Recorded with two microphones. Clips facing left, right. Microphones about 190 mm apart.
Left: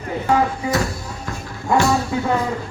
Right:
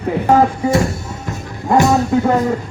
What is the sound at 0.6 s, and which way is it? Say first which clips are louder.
Speech: right 6 dB; 45° right (ahead or behind).